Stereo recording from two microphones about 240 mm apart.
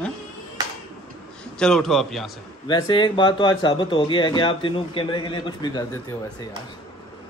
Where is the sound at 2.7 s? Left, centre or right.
Centre.